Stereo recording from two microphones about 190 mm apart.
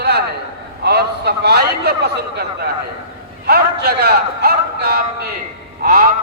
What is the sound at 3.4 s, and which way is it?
A man's voice, 60° right (ahead or behind).